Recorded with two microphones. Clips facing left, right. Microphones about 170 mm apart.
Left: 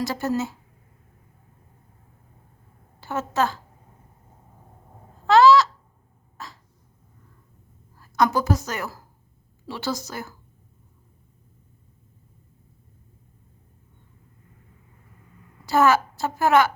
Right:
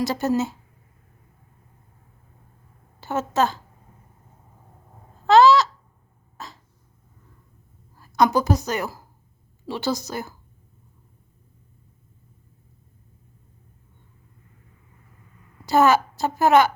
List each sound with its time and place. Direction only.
0.0 s a woman's voice: 20° right (ahead or behind)
3.0 s a woman's voice: 20° right (ahead or behind)
5.2 s a sound: 20° right (ahead or behind)
6.3 s cough: 20° right (ahead or behind)
7.9 s a woman's voice: 15° right (ahead or behind)
15.6 s a woman's voice: 20° right (ahead or behind)